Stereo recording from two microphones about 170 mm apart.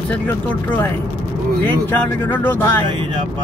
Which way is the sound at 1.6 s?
10° left (ahead or behind).